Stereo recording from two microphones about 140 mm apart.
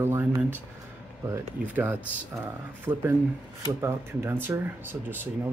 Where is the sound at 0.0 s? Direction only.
15° right (ahead or behind).